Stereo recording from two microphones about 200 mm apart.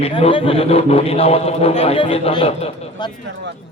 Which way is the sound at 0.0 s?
30° left (ahead or behind).